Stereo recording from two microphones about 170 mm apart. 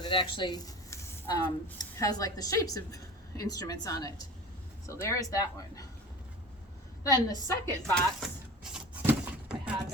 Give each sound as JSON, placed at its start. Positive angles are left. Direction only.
{"t": 0.0, "sound": "speech", "side_deg": 30}
{"t": 7.0, "sound": "speech", "side_deg": 20}
{"t": 7.8, "sound": "speech", "side_deg": 5}
{"t": 9.0, "sound": "a sound", "side_deg": -5}